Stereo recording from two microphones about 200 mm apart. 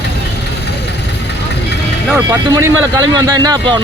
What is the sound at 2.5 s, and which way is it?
Speech, 15° right (ahead or behind).